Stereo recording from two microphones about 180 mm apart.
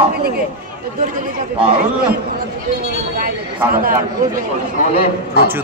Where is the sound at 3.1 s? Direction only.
55° right (ahead or behind).